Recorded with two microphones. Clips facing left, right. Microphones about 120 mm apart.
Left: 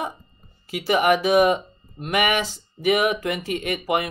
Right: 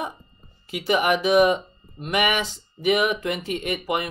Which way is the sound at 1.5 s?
Centre (ahead or behind).